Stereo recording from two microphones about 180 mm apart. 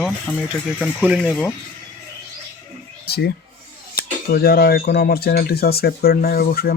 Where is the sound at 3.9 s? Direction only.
60° left (ahead or behind).